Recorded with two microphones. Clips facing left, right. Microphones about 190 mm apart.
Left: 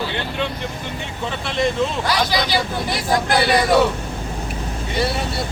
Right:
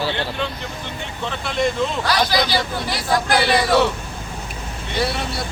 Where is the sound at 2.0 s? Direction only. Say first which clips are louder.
Right 1 dB; 20° left (ahead or behind).